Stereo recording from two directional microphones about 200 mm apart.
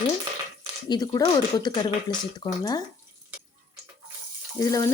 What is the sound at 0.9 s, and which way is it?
A woman's voice, 20° left (ahead or behind).